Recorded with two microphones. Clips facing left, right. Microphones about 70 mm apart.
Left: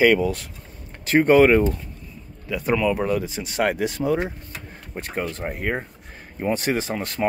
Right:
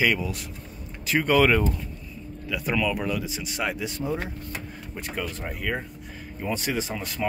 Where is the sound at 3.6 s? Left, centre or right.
Left.